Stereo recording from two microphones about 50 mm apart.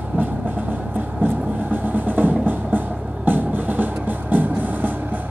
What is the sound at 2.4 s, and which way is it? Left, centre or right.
Music, right.